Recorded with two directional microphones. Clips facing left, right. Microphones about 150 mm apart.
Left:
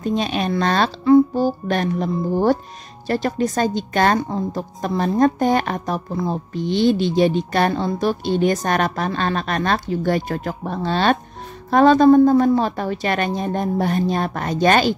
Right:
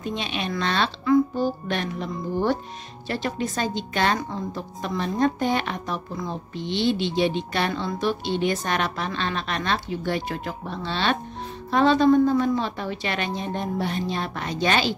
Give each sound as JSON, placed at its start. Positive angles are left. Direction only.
{"t": 0.0, "sound": "a woman's voice", "side_deg": 40}